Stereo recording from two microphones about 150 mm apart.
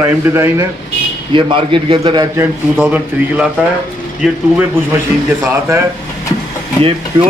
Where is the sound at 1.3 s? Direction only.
35° right (ahead or behind).